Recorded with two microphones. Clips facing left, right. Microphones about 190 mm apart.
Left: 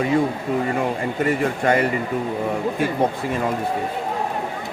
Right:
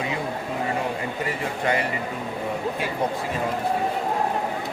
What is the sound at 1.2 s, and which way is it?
Speech, 50° left (ahead or behind).